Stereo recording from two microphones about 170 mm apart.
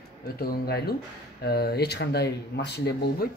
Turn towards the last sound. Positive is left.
turn(degrees=75)  # may be behind; listen again after turning